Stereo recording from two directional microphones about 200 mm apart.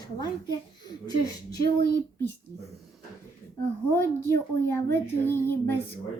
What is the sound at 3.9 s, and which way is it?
Speech, 10° left (ahead or behind).